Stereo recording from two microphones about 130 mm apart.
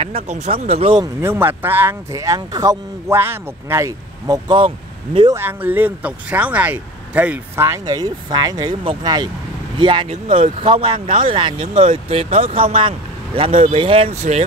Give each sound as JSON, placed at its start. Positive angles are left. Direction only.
{"t": 0.0, "sound": "speech", "side_deg": -50}
{"t": 1.2, "sound": "speech", "side_deg": -15}
{"t": 4.5, "sound": "speech", "side_deg": -40}
{"t": 5.3, "sound": "speech", "side_deg": -15}
{"t": 10.0, "sound": "speech", "side_deg": -55}